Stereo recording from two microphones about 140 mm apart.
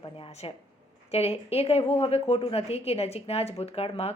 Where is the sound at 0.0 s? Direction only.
45° left (ahead or behind).